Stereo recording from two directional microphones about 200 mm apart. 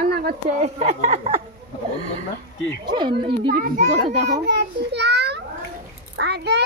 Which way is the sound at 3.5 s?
40° right (ahead or behind).